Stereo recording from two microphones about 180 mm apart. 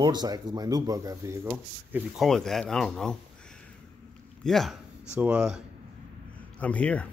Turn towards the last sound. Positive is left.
turn(degrees=10)  # may be behind; listen again after turning